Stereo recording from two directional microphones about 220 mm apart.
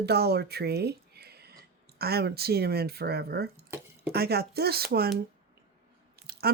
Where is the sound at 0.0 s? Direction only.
45° right (ahead or behind).